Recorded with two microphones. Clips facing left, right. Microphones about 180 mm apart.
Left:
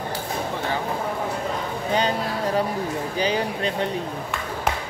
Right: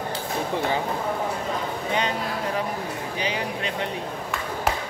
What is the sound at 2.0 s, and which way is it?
Speech, 35° left (ahead or behind).